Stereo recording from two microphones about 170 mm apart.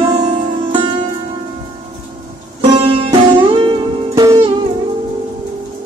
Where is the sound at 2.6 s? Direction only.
30° right (ahead or behind).